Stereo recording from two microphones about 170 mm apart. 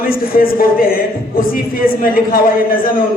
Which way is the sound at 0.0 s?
60° left (ahead or behind).